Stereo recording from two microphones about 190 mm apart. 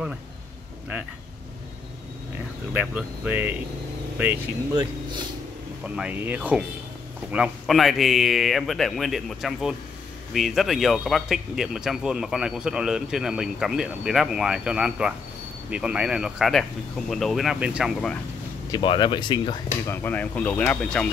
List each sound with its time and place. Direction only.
2.7 s speech: 10° right (ahead or behind)
5.9 s speech: 5° right (ahead or behind)
18.7 s speech: 25° left (ahead or behind)
20.0 s speech: 10° left (ahead or behind)